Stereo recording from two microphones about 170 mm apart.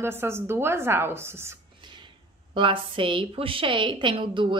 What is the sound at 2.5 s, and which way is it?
A woman's voice, 30° right (ahead or behind).